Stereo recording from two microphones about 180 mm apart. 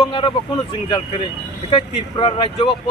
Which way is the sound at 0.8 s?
25° left (ahead or behind).